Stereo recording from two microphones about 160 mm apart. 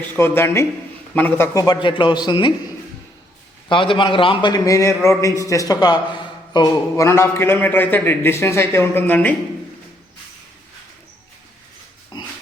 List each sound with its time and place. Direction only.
0.2 s a man's voice: 15° left (ahead or behind)
1.5 s speech: 25° left (ahead or behind)
3.7 s a man's voice: 30° left (ahead or behind); by 9.3 s 10° left (ahead or behind)
12.1 s pig: 25° left (ahead or behind)